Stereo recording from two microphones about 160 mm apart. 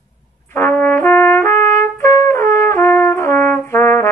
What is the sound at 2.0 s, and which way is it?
Trumpet, 20° left (ahead or behind).